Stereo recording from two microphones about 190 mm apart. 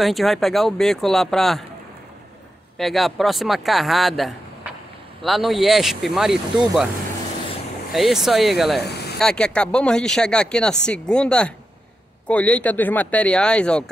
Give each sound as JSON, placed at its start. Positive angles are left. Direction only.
{"t": 0.0, "sound": "speech", "side_deg": 0}
{"t": 2.8, "sound": "speech", "side_deg": 0}
{"t": 7.9, "sound": "speech", "side_deg": 0}
{"t": 8.8, "sound": "vehicle", "side_deg": 60}
{"t": 9.2, "sound": "speech", "side_deg": 5}